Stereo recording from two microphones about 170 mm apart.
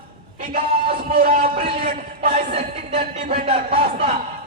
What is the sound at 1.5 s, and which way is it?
Speech, 35° right (ahead or behind).